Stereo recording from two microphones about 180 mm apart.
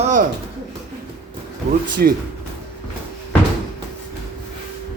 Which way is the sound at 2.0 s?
55° right (ahead or behind).